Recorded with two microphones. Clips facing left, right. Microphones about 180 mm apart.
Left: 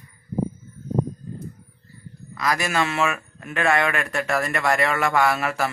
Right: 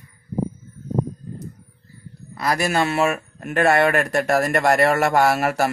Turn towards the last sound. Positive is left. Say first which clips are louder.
# right 3 dB
turn(degrees=-45)  # may be behind; listen again after turning